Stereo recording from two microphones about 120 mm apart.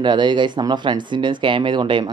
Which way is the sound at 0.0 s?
40° right (ahead or behind).